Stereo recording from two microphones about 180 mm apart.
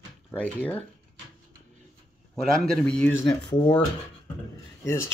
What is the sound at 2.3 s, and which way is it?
Speech, 5° left (ahead or behind).